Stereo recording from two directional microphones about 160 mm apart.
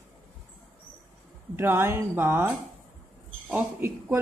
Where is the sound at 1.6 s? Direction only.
15° right (ahead or behind).